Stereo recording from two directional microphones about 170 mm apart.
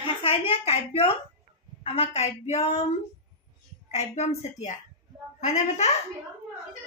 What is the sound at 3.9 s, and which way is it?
A woman's voice, 40° left (ahead or behind).